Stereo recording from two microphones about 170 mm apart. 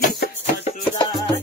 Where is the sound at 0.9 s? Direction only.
25° left (ahead or behind).